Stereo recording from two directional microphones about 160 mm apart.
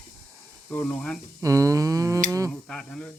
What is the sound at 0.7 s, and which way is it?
Speech, 5° left (ahead or behind).